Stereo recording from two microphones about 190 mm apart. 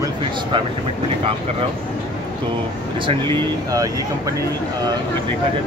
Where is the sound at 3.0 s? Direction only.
25° right (ahead or behind).